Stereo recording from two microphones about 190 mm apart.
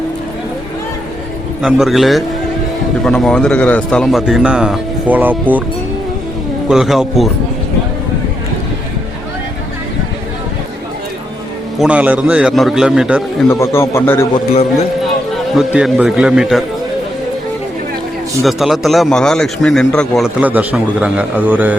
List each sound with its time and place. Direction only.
1.6 s a man's voice: centre (ahead or behind)
6.7 s a man's voice: centre (ahead or behind)
11.8 s a man's voice: 5° right (ahead or behind)
13.5 s a man's voice: 15° left (ahead or behind)
14.3 s a man's voice: 30° left (ahead or behind)
15.5 s a man's voice: 5° right (ahead or behind)
18.4 s a man's voice: centre (ahead or behind)